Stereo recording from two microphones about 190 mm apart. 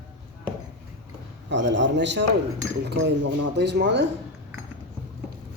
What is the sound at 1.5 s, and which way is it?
Speech, 70° right (ahead or behind).